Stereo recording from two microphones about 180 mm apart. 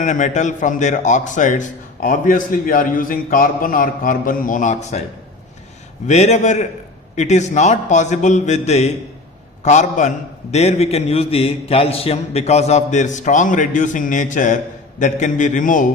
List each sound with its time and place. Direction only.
0.0 s speech: 45° left (ahead or behind)
6.1 s a man's voice: 40° left (ahead or behind)